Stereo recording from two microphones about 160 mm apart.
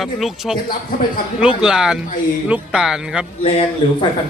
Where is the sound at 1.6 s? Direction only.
5° right (ahead or behind).